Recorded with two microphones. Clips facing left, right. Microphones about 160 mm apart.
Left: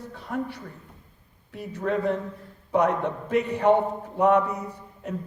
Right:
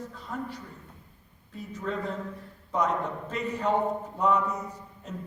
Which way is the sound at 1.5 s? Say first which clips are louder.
Left 6 dB; 65° left (ahead or behind).